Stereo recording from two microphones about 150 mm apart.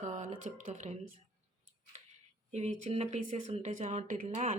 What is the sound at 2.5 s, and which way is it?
Speech, 45° right (ahead or behind).